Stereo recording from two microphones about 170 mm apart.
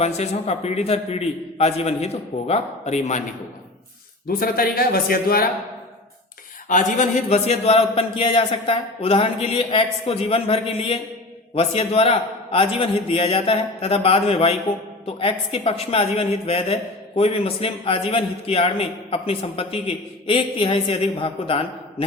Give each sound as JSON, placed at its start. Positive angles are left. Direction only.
{"t": 0.0, "sound": "a man's voice", "side_deg": 40}
{"t": 4.3, "sound": "speech", "side_deg": 60}
{"t": 6.7, "sound": "a man's voice", "side_deg": 45}